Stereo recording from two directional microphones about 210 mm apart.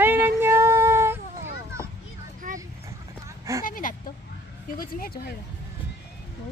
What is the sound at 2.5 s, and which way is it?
Vehicle, 35° right (ahead or behind).